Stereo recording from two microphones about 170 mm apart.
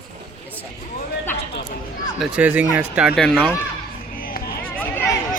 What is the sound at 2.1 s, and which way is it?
Speech, 10° right (ahead or behind).